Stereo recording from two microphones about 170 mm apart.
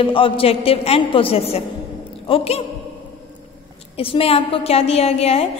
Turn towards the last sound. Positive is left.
turn(degrees=35)  # may be behind; listen again after turning